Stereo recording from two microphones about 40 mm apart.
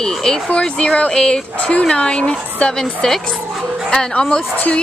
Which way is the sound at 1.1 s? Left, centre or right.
Centre.